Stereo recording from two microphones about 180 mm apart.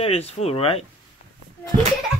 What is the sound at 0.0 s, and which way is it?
Speech, 35° left (ahead or behind).